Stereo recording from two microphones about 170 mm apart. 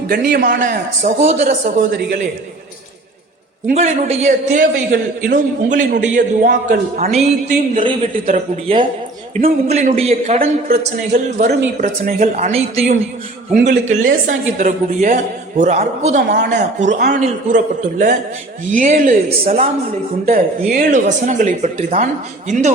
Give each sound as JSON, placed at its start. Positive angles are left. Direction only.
{"t": 0.1, "sound": "speech", "side_deg": -60}
{"t": 3.7, "sound": "speech", "side_deg": -40}
{"t": 9.4, "sound": "a man's voice", "side_deg": -40}
{"t": 12.5, "sound": "a man's voice", "side_deg": -35}